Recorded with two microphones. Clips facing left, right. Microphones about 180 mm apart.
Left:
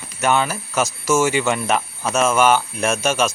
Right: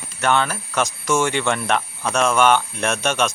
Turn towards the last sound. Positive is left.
turn(degrees=5)  # may be behind; listen again after turning